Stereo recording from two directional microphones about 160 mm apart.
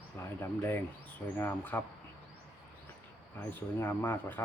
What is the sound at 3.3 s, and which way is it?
Speech, 15° left (ahead or behind).